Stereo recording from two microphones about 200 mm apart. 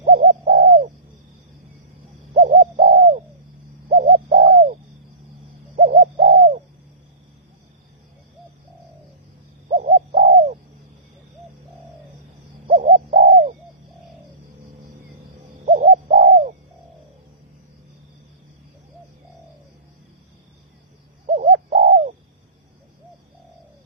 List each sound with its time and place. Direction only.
0.0 s bird: 40° right (ahead or behind)
2.3 s bird: 35° right (ahead or behind)
5.7 s bird: 40° right (ahead or behind)
9.6 s bird: 35° right (ahead or behind)
12.6 s bird: 40° right (ahead or behind)
15.6 s bird: 35° right (ahead or behind)
21.2 s bird: 35° right (ahead or behind)